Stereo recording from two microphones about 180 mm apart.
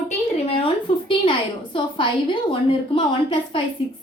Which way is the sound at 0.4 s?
30° left (ahead or behind).